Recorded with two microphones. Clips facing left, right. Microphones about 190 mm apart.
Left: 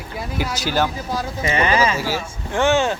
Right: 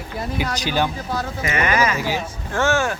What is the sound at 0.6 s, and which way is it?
Speech, 15° right (ahead or behind).